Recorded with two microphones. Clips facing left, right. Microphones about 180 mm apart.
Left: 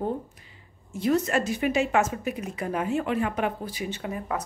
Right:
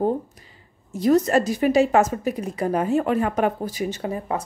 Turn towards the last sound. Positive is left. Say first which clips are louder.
# right 4 dB
turn(degrees=-30)  # may be behind; listen again after turning